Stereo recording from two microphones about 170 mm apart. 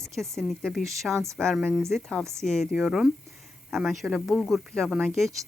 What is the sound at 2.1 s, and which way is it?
Speech, 15° right (ahead or behind).